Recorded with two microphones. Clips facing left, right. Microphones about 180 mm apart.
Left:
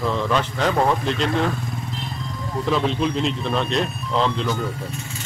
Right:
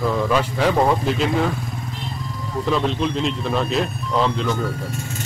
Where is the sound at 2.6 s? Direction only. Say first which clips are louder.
Even; centre (ahead or behind).